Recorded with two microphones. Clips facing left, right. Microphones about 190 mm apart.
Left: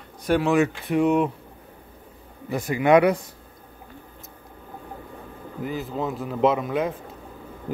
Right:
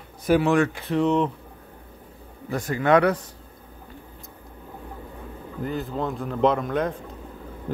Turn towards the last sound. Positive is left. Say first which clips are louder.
# even
turn(degrees=5)  # may be behind; listen again after turning